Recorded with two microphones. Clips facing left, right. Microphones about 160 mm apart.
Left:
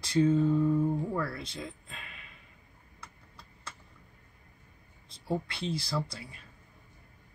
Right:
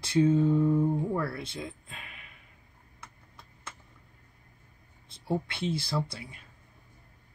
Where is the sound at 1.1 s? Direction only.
5° right (ahead or behind).